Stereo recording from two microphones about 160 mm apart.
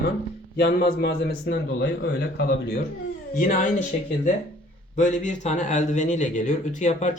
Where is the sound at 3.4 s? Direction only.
55° left (ahead or behind).